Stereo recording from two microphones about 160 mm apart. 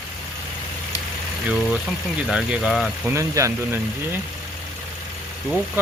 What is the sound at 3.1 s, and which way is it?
Speech, 20° right (ahead or behind).